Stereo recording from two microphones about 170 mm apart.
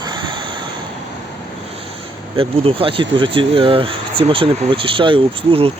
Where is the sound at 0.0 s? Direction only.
25° right (ahead or behind).